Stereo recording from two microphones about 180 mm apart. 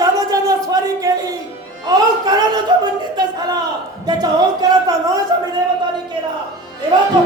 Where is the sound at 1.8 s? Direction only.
20° right (ahead or behind).